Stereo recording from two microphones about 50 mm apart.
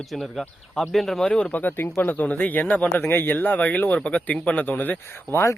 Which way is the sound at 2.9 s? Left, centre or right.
Left.